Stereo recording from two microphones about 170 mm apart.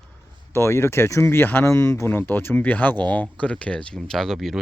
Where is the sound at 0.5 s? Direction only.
15° left (ahead or behind).